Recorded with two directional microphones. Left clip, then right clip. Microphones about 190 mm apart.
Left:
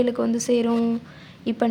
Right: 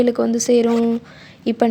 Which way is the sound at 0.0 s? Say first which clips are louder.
Right 5 dB; 25° right (ahead or behind).